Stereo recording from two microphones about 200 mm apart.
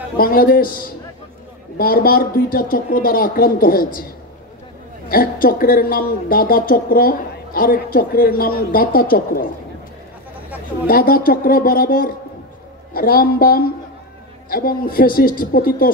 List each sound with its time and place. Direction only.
0.2 s speech: 45° left (ahead or behind)
10.9 s speech: 45° left (ahead or behind)